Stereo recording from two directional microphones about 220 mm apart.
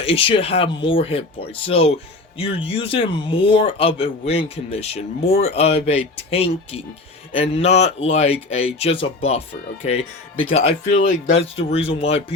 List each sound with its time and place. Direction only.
0.0 s speech: 25° left (ahead or behind)